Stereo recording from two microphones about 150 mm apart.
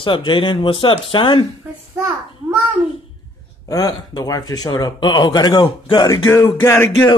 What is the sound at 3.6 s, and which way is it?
Speech, 25° left (ahead or behind).